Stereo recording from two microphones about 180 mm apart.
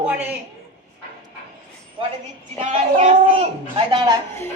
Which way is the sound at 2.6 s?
35° right (ahead or behind).